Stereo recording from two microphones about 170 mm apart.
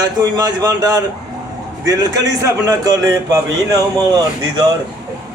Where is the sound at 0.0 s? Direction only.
25° right (ahead or behind).